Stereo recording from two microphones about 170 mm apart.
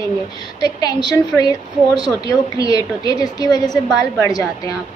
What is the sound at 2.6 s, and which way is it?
A woman's voice, 20° left (ahead or behind).